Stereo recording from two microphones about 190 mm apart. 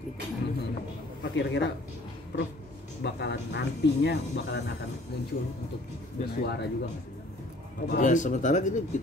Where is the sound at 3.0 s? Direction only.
65° left (ahead or behind).